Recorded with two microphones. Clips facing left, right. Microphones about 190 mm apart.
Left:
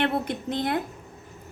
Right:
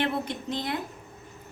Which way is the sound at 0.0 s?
55° left (ahead or behind).